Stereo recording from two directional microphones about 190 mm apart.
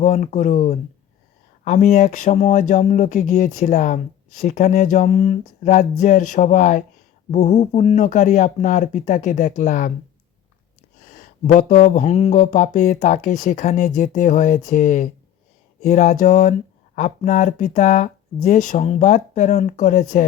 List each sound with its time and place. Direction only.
0.0 s speech: 40° left (ahead or behind)
11.1 s speech: 40° left (ahead or behind)